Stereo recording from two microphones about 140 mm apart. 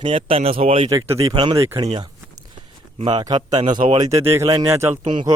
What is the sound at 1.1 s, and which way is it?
Speech, 40° right (ahead or behind).